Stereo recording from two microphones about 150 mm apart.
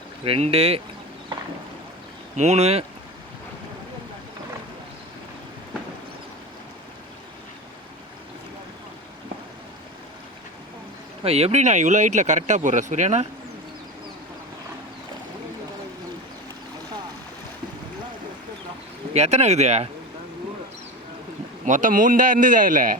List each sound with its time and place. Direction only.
0.3 s speech: 40° right (ahead or behind)
2.3 s speech: 45° right (ahead or behind)
11.2 s speech: 40° right (ahead or behind)
19.1 s speech: 45° right (ahead or behind)
21.6 s a man's voice: 55° right (ahead or behind)